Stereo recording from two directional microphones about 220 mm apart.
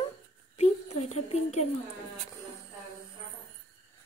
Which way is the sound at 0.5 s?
30° left (ahead or behind).